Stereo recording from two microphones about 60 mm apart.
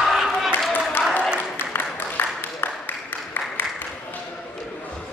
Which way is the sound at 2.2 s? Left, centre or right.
Left.